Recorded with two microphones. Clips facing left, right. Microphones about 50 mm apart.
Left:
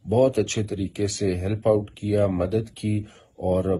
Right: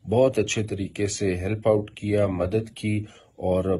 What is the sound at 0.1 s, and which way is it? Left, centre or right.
Speech, right.